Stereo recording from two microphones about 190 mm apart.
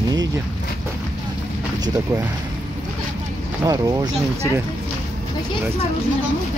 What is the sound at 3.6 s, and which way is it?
Speech, 20° right (ahead or behind).